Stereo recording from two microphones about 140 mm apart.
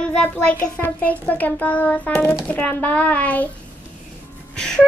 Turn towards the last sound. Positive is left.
turn(degrees=5)  # may be behind; listen again after turning